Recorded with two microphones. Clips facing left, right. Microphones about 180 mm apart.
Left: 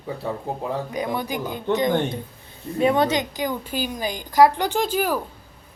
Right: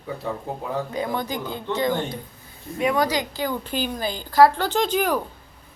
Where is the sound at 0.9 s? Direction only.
15° left (ahead or behind).